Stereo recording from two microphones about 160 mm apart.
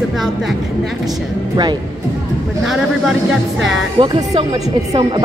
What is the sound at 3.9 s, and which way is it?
A woman's voice, 30° right (ahead or behind).